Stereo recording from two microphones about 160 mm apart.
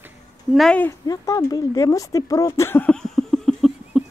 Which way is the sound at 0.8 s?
20° left (ahead or behind).